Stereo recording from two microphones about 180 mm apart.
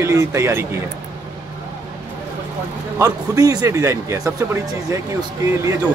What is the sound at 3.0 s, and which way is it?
Speech, 20° right (ahead or behind).